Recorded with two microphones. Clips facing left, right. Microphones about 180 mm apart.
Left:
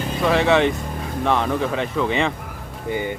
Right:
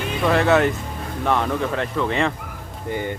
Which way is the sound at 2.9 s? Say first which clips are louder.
Left 1 dB; 10° left (ahead or behind).